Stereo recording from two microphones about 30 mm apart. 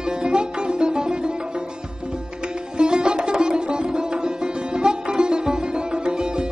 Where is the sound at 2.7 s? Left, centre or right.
Right.